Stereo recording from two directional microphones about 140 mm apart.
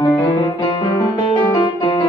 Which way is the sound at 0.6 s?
30° left (ahead or behind).